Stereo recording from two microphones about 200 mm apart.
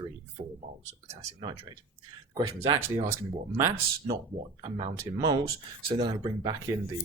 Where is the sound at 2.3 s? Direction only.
25° right (ahead or behind).